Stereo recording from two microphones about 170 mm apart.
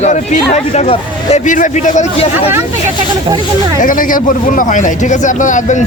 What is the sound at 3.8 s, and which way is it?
Speech, 55° left (ahead or behind).